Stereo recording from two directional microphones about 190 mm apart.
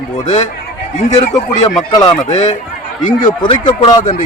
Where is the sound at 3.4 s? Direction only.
25° left (ahead or behind).